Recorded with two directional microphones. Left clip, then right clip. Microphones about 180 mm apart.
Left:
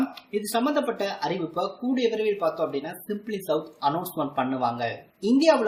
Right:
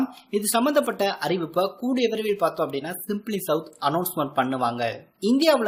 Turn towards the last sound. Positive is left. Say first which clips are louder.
# even
turn(degrees=-45)  # may be behind; listen again after turning